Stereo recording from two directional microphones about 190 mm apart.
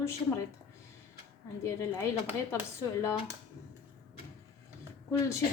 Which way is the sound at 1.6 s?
15° left (ahead or behind).